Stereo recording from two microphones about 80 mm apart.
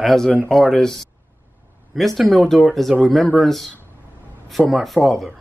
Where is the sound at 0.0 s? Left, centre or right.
Centre.